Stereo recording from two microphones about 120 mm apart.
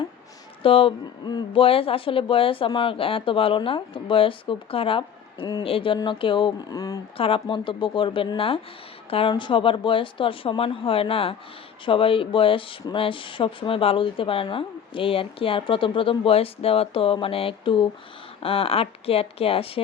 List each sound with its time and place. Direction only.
0.6 s speech: 50° left (ahead or behind)
1.6 s speech: 50° left (ahead or behind); by 7.0 s 30° left (ahead or behind)
7.2 s a woman's voice: 50° left (ahead or behind)